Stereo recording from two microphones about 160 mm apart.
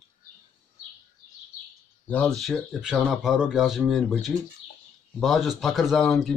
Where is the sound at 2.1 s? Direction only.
5° left (ahead or behind).